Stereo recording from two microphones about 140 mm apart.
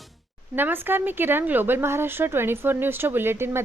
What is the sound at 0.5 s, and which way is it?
Speech, 15° right (ahead or behind).